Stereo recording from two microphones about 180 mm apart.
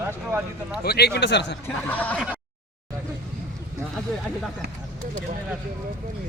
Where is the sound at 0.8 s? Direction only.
60° left (ahead or behind).